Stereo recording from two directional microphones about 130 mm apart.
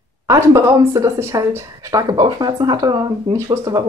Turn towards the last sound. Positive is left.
turn(degrees=-30)  # may be behind; listen again after turning